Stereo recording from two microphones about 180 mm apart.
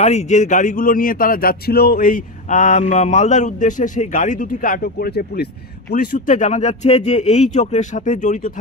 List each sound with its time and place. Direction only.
0.0 s speech: 40° left (ahead or behind); by 5.5 s 60° left (ahead or behind)
5.9 s speech: 45° left (ahead or behind)